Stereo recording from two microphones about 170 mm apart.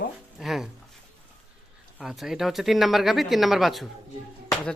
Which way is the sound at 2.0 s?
Centre (ahead or behind).